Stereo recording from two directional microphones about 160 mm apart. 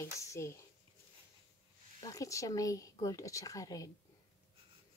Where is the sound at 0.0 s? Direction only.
15° left (ahead or behind).